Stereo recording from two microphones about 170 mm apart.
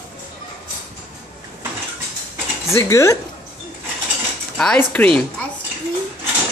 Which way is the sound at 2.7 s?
15° left (ahead or behind).